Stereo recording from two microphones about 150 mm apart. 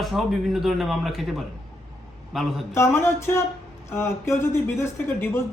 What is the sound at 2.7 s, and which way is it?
A man's voice, 15° left (ahead or behind).